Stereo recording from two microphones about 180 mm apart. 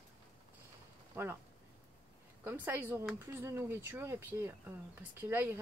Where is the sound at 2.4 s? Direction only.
10° right (ahead or behind).